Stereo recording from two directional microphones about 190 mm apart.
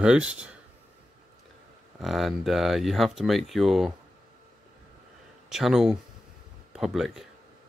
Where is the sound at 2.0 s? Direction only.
Centre (ahead or behind).